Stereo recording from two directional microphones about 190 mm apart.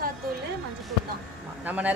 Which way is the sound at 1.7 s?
10° right (ahead or behind).